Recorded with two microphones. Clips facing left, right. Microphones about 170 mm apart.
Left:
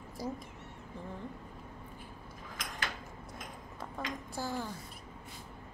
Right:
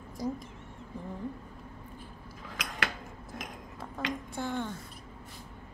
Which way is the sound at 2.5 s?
80° right.